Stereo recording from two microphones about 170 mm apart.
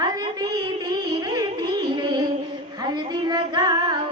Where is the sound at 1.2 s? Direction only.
25° right (ahead or behind).